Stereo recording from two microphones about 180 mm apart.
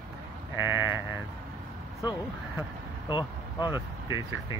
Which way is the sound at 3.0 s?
25° left (ahead or behind).